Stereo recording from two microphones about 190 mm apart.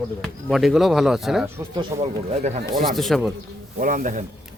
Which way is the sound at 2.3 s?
35° right (ahead or behind).